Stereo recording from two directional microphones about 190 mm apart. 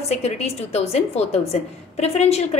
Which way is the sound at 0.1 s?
35° left (ahead or behind).